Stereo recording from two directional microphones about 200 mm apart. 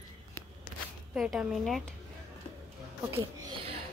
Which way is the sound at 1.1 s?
Centre (ahead or behind).